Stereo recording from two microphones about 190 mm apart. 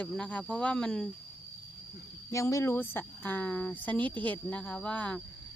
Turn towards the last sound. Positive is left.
turn(degrees=5)  # may be behind; listen again after turning